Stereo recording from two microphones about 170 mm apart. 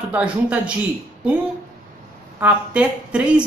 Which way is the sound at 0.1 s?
5° right (ahead or behind).